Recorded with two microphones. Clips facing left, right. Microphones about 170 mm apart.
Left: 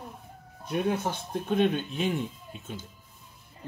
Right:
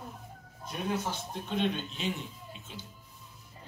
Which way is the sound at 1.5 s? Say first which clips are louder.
Left 6 dB; 50° left (ahead or behind).